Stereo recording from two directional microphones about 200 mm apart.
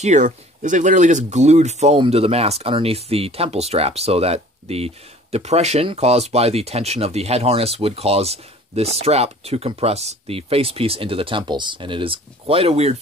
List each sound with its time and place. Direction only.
0.0 s speech: 35° right (ahead or behind)